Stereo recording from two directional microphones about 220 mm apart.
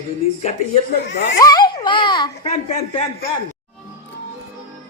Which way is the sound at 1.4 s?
15° left (ahead or behind).